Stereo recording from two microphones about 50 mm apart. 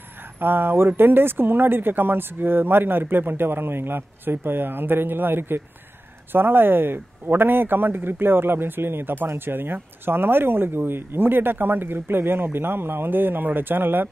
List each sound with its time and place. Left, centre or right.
0.4 s speech: right